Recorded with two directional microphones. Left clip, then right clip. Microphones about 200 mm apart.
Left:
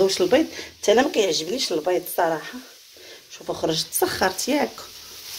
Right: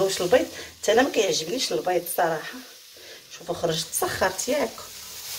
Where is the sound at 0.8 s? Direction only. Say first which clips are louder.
Left 2 dB; 55° left (ahead or behind).